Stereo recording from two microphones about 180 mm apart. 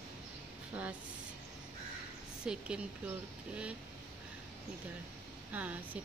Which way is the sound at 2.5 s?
5° right (ahead or behind).